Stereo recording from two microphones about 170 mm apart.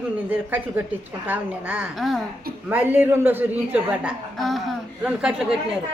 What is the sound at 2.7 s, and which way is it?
A woman's voice, 10° right (ahead or behind).